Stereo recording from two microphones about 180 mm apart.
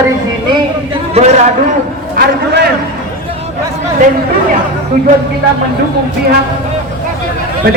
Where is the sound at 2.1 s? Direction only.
60° right (ahead or behind).